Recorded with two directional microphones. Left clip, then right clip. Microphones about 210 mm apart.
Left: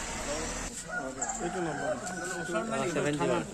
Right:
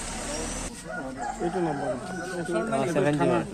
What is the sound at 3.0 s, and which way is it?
Speech, 50° right (ahead or behind).